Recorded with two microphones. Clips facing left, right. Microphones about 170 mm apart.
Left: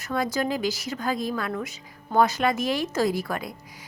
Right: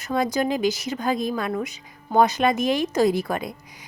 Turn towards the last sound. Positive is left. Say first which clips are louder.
# right 4 dB
turn(degrees=-20)  # may be behind; listen again after turning